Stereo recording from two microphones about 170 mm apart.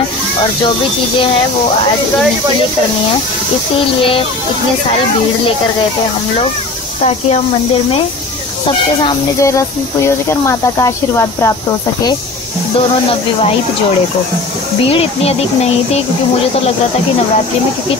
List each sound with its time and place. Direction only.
9.4 s speech: 15° left (ahead or behind)
14.9 s speech: 35° left (ahead or behind)